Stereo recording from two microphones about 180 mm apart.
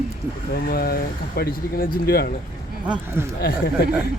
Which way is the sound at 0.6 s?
60° left (ahead or behind).